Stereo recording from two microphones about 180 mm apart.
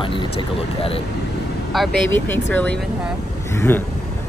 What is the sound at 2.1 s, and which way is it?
Speech, 10° left (ahead or behind).